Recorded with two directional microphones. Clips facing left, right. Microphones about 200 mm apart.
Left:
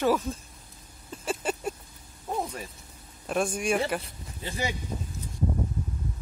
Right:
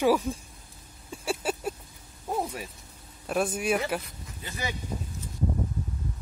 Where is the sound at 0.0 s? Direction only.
10° right (ahead or behind).